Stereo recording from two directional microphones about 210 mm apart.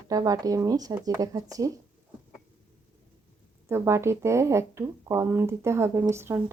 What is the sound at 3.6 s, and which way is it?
Speech, 15° right (ahead or behind).